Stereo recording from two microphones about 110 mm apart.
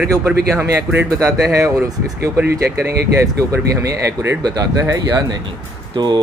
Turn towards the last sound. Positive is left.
turn(degrees=-40)  # may be behind; listen again after turning